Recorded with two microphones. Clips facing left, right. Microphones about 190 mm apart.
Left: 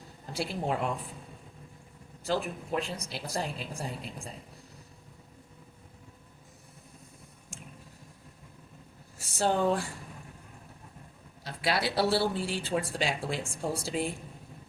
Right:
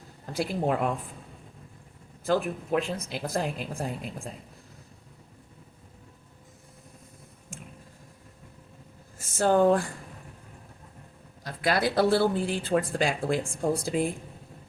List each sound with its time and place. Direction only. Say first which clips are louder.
0.3 s speech: right 4 dB; 50° right (ahead or behind)
2.6 s speech: right 5 dB; 50° right (ahead or behind)
9.1 s speech: right 6 dB; 50° right (ahead or behind)
11.4 s speech: right 4 dB; 50° right (ahead or behind)